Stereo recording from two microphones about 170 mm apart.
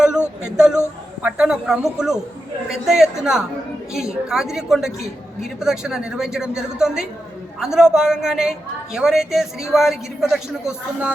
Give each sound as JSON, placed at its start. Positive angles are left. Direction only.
{"t": 0.4, "sound": "a woman's voice", "side_deg": -5}